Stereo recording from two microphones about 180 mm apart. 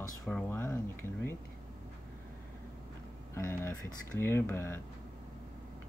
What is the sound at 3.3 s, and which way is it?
Speech, 15° left (ahead or behind).